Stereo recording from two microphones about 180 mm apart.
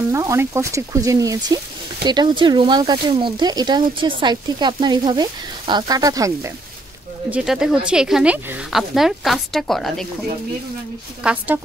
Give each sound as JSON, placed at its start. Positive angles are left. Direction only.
{"t": 0.1, "sound": "speech", "side_deg": -15}
{"t": 7.2, "sound": "speech", "side_deg": -5}
{"t": 11.2, "sound": "speech", "side_deg": -10}